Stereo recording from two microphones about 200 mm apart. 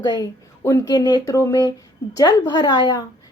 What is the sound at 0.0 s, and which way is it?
Speech, 20° left (ahead or behind).